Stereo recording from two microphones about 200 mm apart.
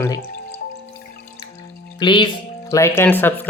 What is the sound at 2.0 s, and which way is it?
Speech, 25° left (ahead or behind).